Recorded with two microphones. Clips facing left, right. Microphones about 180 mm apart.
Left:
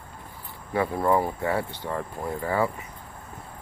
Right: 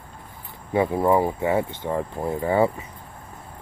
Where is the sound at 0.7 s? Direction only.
20° right (ahead or behind).